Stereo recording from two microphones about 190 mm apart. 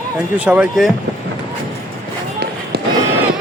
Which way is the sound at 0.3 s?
5° right (ahead or behind).